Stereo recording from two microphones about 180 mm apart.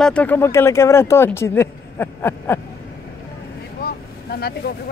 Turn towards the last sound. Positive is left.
turn(degrees=60)  # may be behind; listen again after turning